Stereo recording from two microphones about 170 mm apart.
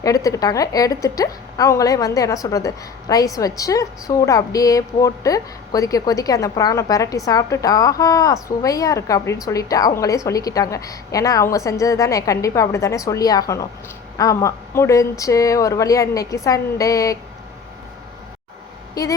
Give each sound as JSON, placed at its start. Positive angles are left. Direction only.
{"t": 0.0, "sound": "a woman's voice", "side_deg": 20}
{"t": 19.0, "sound": "a woman's voice", "side_deg": 20}